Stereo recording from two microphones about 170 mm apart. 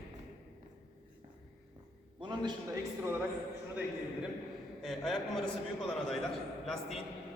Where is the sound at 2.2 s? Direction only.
25° right (ahead or behind).